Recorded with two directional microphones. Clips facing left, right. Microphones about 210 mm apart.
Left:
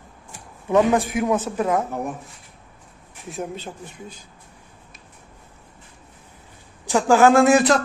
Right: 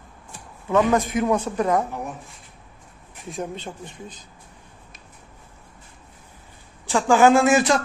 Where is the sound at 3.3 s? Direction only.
5° left (ahead or behind).